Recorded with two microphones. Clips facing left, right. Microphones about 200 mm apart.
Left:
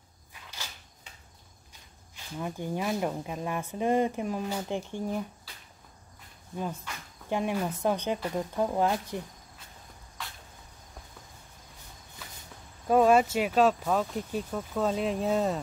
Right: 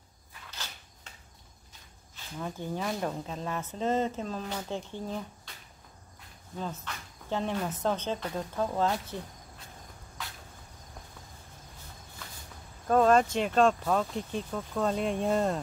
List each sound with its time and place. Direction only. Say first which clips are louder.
0.3 s a sound: even; 10° left (ahead or behind)
2.3 s speech: left 2 dB; 15° left (ahead or behind)
6.5 s speech: left 2 dB; 10° left (ahead or behind)
12.8 s speech: left 1 dB; 10° left (ahead or behind)